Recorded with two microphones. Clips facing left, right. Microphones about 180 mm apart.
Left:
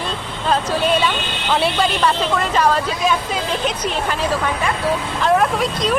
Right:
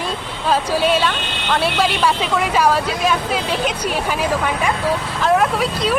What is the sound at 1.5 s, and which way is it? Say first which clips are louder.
Speech: even; centre (ahead or behind).